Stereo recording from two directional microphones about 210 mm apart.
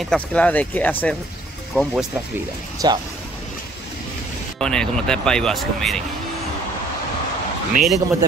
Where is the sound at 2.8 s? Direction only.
20° right (ahead or behind).